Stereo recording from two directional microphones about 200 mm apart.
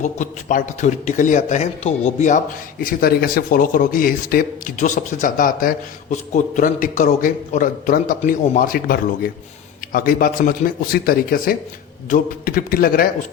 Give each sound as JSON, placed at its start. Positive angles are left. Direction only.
{"t": 0.0, "sound": "a man's voice", "side_deg": 40}
{"t": 2.8, "sound": "speech", "side_deg": 50}